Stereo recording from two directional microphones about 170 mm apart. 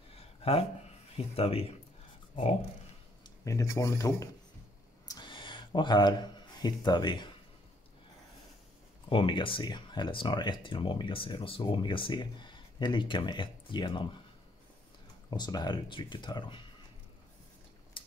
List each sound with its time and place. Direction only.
0.4 s speech: 35° left (ahead or behind)
3.3 s speech: 20° left (ahead or behind)
5.0 s a sound: 25° left (ahead or behind)
9.1 s speech: 30° left (ahead or behind)
15.2 s speech: 25° left (ahead or behind)